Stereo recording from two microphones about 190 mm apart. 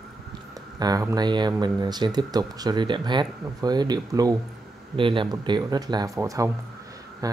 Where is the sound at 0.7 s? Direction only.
20° right (ahead or behind).